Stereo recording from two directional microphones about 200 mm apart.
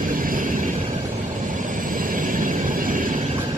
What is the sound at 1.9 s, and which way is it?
Train, 45° right (ahead or behind).